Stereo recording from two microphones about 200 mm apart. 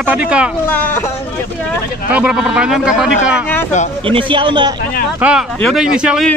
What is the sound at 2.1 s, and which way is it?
Speech, 5° right (ahead or behind).